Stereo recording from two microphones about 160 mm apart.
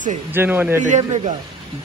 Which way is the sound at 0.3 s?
10° right (ahead or behind).